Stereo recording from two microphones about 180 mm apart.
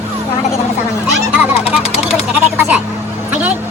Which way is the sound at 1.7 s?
35° left (ahead or behind).